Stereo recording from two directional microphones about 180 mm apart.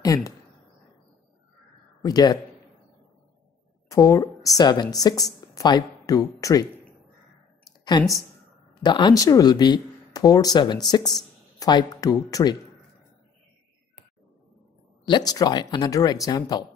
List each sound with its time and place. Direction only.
0.0 s speech: 20° left (ahead or behind)
2.0 s speech: 20° left (ahead or behind)
3.9 s a woman's voice: 20° left (ahead or behind)
7.6 s a sound: 25° left (ahead or behind)
8.8 s speech: 25° left (ahead or behind)
15.0 s speech: 25° left (ahead or behind)